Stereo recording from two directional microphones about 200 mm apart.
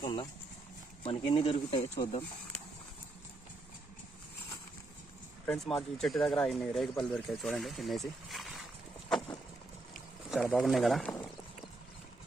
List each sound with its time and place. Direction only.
0.0 s a sound: 25° left (ahead or behind)
1.0 s speech: 25° left (ahead or behind)
5.5 s speech: centre (ahead or behind)
9.9 s boat: centre (ahead or behind)